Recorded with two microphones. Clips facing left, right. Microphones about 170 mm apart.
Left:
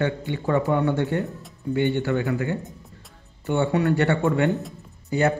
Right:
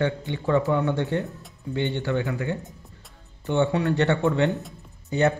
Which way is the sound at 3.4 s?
10° left (ahead or behind).